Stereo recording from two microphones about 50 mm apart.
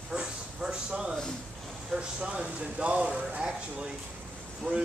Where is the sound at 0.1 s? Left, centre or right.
Centre.